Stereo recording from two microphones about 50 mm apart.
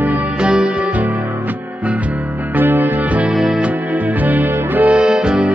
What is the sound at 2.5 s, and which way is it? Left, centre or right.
Music, right.